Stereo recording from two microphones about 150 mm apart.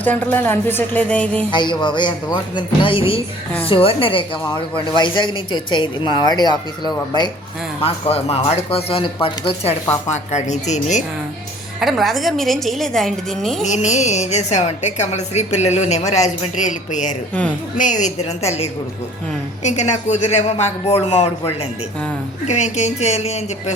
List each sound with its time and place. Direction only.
0.0 s speech: 10° left (ahead or behind)
1.5 s speech: 30° left (ahead or behind)
7.8 s speech: 40° left (ahead or behind)
10.1 s a woman's voice: 50° left (ahead or behind)
11.8 s a woman's voice: centre (ahead or behind)
13.7 s a woman's voice: 50° left (ahead or behind)